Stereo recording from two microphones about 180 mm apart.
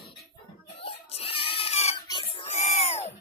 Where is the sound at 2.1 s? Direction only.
30° left (ahead or behind).